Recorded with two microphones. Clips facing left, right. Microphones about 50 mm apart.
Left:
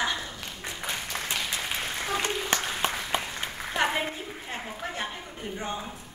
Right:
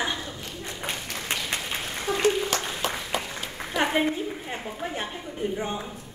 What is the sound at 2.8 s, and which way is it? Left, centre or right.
Applause, left.